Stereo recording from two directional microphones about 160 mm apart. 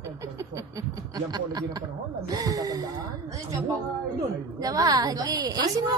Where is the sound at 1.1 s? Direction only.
25° right (ahead or behind).